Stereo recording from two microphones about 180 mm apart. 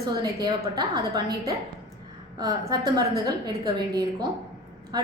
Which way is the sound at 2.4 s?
20° right (ahead or behind).